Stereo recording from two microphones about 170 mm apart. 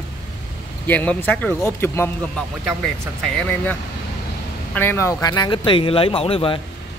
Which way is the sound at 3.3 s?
5° left (ahead or behind).